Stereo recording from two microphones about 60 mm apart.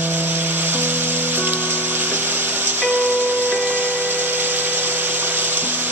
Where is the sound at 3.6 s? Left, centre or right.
Right.